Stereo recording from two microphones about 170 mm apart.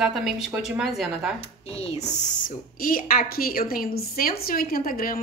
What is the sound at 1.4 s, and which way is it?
Speech, 35° left (ahead or behind).